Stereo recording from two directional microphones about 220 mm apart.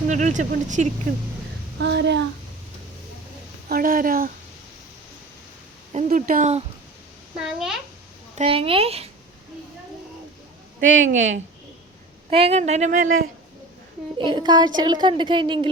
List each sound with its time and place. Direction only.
0.1 s speech: 35° right (ahead or behind)
1.8 s a sound: 50° right (ahead or behind)
3.7 s a sound: 40° right (ahead or behind)
5.9 s a sound: 30° right (ahead or behind)
7.3 s a child's voice: centre (ahead or behind)
8.4 s a woman's voice: 25° right (ahead or behind)
10.8 s speech: 60° right (ahead or behind)
12.3 s a woman's voice: 25° right (ahead or behind)
14.2 s a woman's voice: 20° right (ahead or behind)